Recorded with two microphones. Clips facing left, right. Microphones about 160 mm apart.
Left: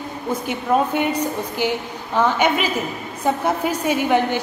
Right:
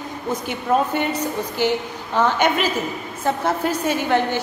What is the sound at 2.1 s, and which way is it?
A woman's voice, 5° left (ahead or behind).